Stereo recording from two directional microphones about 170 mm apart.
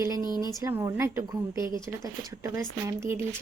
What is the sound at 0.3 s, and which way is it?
A woman's voice, 20° right (ahead or behind).